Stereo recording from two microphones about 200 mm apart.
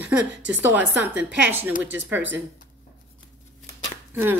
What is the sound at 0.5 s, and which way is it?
Speech, 10° right (ahead or behind).